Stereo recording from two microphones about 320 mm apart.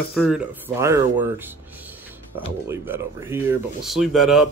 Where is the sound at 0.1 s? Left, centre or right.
Centre.